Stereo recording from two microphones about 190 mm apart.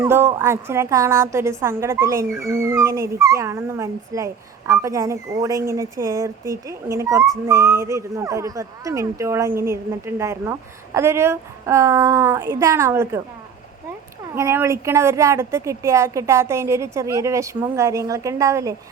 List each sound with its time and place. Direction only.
0.0 s a woman's voice: 10° right (ahead or behind)
14.3 s a woman's voice: 15° right (ahead or behind)